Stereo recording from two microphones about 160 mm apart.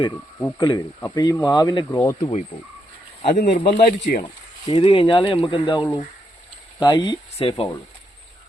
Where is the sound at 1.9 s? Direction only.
15° left (ahead or behind).